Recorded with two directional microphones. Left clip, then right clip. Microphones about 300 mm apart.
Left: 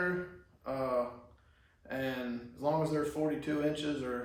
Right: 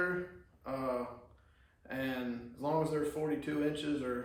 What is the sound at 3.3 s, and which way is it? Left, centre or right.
Speech, centre.